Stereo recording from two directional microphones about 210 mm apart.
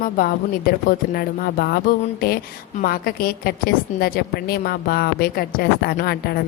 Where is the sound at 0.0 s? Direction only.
45° left (ahead or behind).